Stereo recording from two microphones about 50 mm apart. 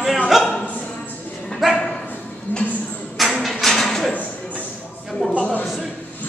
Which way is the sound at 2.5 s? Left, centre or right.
Left.